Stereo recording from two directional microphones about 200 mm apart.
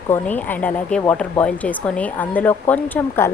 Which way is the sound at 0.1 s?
10° left (ahead or behind).